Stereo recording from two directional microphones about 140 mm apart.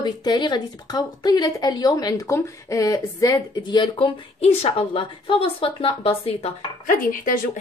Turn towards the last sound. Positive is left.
turn(degrees=75)  # may be behind; listen again after turning